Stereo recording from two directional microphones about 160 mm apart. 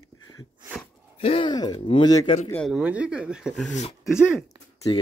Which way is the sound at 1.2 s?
40° left (ahead or behind).